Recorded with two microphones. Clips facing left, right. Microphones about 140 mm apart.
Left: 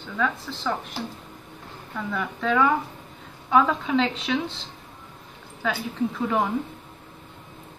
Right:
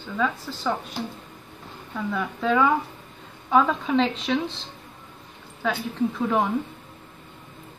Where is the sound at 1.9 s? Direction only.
5° right (ahead or behind).